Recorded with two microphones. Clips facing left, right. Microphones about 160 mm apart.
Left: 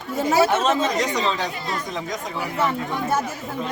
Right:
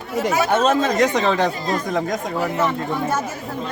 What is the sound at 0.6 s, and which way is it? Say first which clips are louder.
Speech: right 4 dB; 55° right (ahead or behind).